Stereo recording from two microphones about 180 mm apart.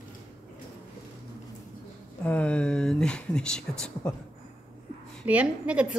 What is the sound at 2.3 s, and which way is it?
Speech, 5° left (ahead or behind).